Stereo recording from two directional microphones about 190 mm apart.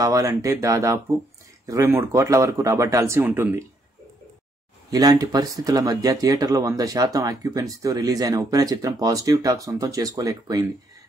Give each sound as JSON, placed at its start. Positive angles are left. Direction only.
{"t": 0.0, "sound": "speech", "side_deg": -15}
{"t": 4.9, "sound": "speech", "side_deg": -20}